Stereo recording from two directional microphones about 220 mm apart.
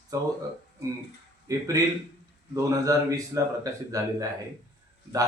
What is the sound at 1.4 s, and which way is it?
Speech, 15° right (ahead or behind).